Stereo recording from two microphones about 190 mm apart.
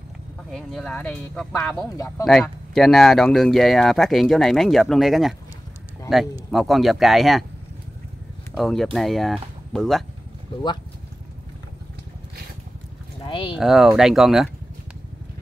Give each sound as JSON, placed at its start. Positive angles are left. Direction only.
{"t": 0.5, "sound": "speech", "side_deg": 0}
{"t": 2.0, "sound": "speech", "side_deg": 15}
{"t": 2.2, "sound": "speech", "side_deg": 0}
{"t": 8.5, "sound": "speech", "side_deg": 0}
{"t": 13.3, "sound": "speech", "side_deg": 25}
{"t": 13.6, "sound": "speech", "side_deg": 0}